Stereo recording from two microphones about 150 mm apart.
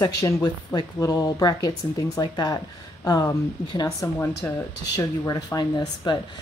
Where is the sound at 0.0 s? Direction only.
25° left (ahead or behind).